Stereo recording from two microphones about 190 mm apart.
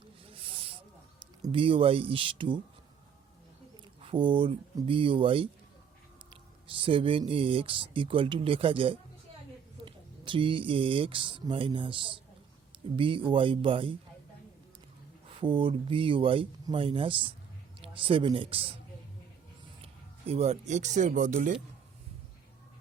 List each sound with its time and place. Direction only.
0.3 s snake: 30° right (ahead or behind)
1.4 s speech: 30° right (ahead or behind)
4.0 s speech: 25° right (ahead or behind)
15.4 s speech: 25° right (ahead or behind)
19.8 s speech: 30° right (ahead or behind)